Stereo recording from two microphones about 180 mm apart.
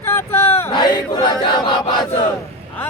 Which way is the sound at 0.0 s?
15° left (ahead or behind).